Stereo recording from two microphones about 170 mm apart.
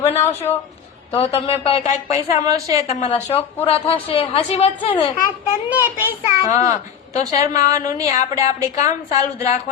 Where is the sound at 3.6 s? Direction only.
35° left (ahead or behind).